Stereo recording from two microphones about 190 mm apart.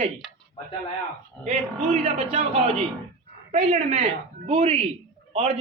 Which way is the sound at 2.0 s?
30° right (ahead or behind).